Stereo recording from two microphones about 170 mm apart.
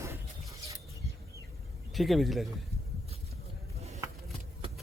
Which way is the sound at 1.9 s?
Centre (ahead or behind).